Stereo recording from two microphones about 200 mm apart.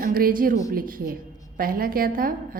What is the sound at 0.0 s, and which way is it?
A woman's voice, 45° right (ahead or behind).